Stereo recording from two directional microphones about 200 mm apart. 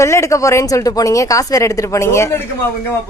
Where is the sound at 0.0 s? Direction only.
15° left (ahead or behind).